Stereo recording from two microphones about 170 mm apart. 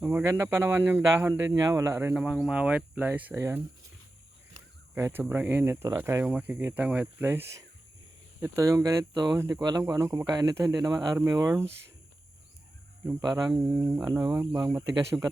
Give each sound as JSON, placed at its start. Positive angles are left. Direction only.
{"t": 0.0, "sound": "speech", "side_deg": -10}
{"t": 4.9, "sound": "speech", "side_deg": -15}
{"t": 13.1, "sound": "speech", "side_deg": -20}